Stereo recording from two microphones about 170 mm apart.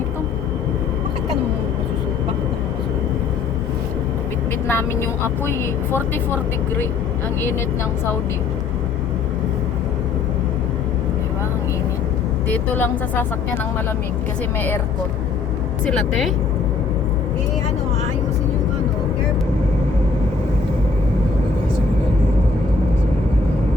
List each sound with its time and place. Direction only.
4.7 s speech: 15° left (ahead or behind)
12.5 s speech: 10° left (ahead or behind)
15.9 s speech: centre (ahead or behind)